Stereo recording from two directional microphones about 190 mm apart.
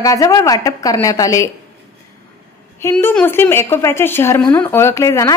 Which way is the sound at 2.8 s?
10° left (ahead or behind).